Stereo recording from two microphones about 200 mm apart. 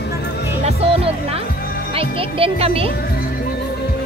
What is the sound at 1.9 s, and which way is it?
Speech, 30° right (ahead or behind).